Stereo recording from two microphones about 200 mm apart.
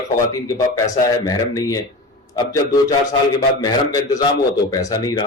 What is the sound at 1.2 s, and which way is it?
A man's voice, 15° left (ahead or behind).